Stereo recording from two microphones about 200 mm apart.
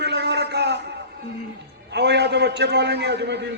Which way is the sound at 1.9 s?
55° right (ahead or behind).